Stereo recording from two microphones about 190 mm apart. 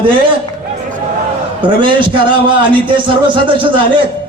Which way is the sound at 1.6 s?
25° right (ahead or behind).